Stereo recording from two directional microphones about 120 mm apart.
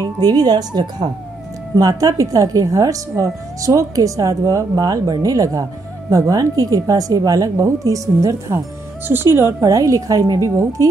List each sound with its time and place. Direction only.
0.0 s speech: 35° right (ahead or behind)